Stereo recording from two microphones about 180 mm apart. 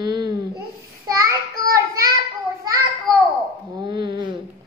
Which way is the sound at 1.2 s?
20° right (ahead or behind).